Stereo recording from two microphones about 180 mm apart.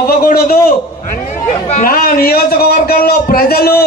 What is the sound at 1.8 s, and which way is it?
A man's voice, 55° left (ahead or behind).